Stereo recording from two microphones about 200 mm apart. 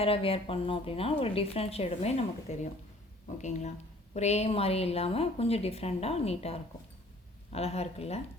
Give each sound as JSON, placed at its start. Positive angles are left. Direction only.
{"t": 0.0, "sound": "a woman's voice", "side_deg": 30}